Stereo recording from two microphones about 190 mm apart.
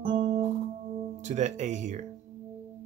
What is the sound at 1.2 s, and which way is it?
Speech, 40° right (ahead or behind).